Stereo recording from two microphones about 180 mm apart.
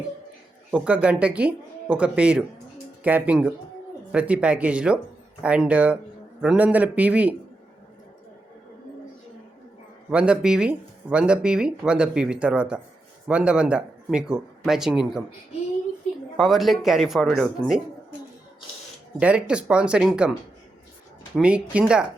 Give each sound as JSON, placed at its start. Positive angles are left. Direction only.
{"t": 0.7, "sound": "speech", "side_deg": -5}
{"t": 10.1, "sound": "speech", "side_deg": -5}
{"t": 16.4, "sound": "speech", "side_deg": 0}
{"t": 19.2, "sound": "speech", "side_deg": -5}
{"t": 21.3, "sound": "speech", "side_deg": -5}